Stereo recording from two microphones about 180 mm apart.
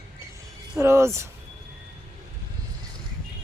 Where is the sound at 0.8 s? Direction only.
15° right (ahead or behind).